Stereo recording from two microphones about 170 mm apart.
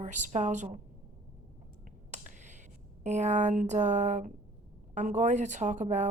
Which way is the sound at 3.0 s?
45° right (ahead or behind).